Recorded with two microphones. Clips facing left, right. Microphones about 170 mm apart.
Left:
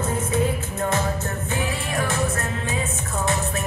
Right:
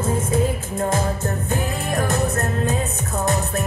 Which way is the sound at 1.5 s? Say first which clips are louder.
Right 2 dB; 40° right (ahead or behind).